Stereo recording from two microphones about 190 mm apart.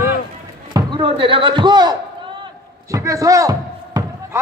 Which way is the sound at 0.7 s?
25° right (ahead or behind).